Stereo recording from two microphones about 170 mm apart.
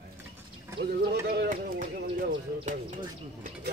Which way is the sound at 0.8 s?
70° right (ahead or behind).